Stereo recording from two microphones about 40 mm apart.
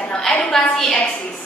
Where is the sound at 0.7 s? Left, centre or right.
Centre.